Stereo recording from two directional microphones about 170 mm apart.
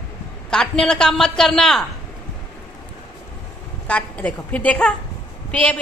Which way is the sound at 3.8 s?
5° left (ahead or behind).